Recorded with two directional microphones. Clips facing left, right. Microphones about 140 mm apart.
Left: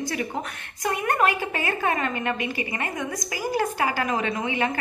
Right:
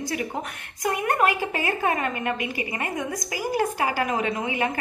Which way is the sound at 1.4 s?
30° right (ahead or behind).